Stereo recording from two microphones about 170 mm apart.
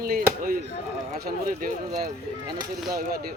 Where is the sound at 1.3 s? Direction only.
50° right (ahead or behind).